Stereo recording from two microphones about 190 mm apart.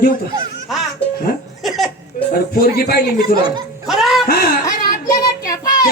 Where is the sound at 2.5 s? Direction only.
55° left (ahead or behind).